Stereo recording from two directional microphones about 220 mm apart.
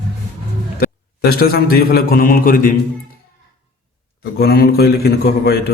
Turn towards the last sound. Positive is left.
turn(degrees=45)  # may be behind; listen again after turning